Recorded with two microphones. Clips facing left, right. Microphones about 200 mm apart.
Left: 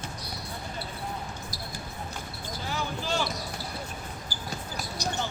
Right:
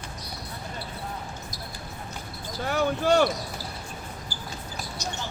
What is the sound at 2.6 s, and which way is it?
Basketball bounce, 60° right (ahead or behind).